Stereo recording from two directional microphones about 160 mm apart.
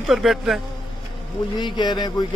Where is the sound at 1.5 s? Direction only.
30° left (ahead or behind).